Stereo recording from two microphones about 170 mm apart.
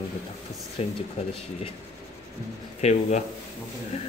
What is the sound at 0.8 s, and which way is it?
Speech, 35° left (ahead or behind).